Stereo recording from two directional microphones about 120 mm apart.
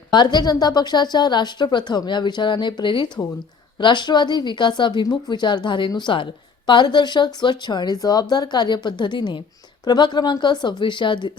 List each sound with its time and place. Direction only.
0.1 s a woman's voice: 40° left (ahead or behind)